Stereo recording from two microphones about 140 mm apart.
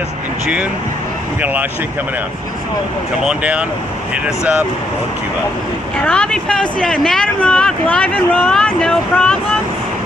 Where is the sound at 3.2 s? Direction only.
10° right (ahead or behind).